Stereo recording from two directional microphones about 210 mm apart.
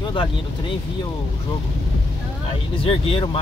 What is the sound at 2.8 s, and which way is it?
Speech, 25° left (ahead or behind).